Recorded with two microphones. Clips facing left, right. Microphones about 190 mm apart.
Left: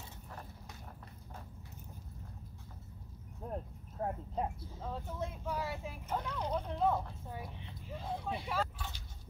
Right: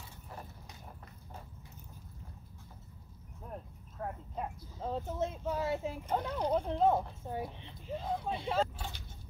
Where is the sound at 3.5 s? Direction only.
30° left (ahead or behind).